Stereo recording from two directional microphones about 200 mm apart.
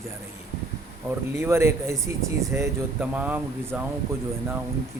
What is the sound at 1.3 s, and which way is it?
Speech, 15° right (ahead or behind).